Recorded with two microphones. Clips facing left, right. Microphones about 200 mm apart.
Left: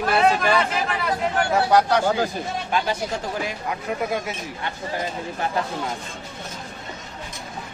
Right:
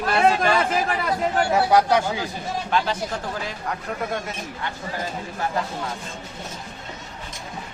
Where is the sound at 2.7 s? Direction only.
10° left (ahead or behind).